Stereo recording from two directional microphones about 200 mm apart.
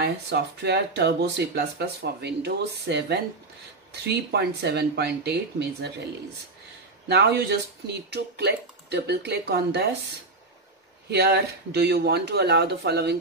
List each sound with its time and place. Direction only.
0.0 s speech: 55° right (ahead or behind)
7.1 s speech: 55° right (ahead or behind)
11.1 s speech: 55° right (ahead or behind)